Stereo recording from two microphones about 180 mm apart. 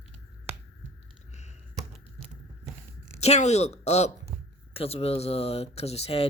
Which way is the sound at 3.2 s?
40° left (ahead or behind).